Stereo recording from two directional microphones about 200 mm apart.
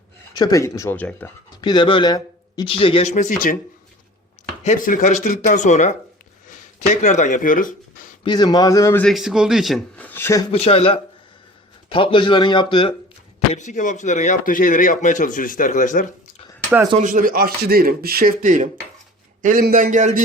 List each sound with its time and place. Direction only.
0.3 s a man's voice: 15° left (ahead or behind)
1.6 s a man's voice: 20° left (ahead or behind); by 3.6 s 45° left (ahead or behind)
4.6 s speech: 40° left (ahead or behind)
8.2 s a man's voice: 20° left (ahead or behind)
10.5 s a man's voice: 30° left (ahead or behind)
13.5 s speech: 35° left (ahead or behind)
16.6 s speech: 5° right (ahead or behind)
17.0 s a man's voice: 40° right (ahead or behind)